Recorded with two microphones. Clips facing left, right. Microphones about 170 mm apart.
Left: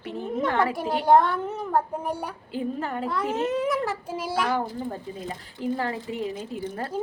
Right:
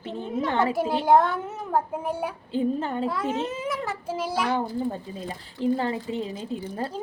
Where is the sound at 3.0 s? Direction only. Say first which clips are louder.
Left 1 dB; centre (ahead or behind).